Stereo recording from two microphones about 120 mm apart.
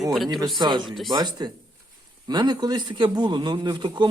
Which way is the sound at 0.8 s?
Centre (ahead or behind).